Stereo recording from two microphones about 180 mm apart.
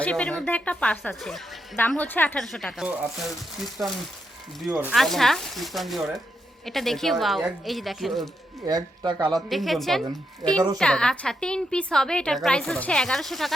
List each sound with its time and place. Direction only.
0.0 s a woman's voice: 5° left (ahead or behind)
4.7 s speech: 10° right (ahead or behind)
4.9 s a woman's voice: centre (ahead or behind)
8.6 s speech: 20° right (ahead or behind)
9.2 s a woman's voice: centre (ahead or behind)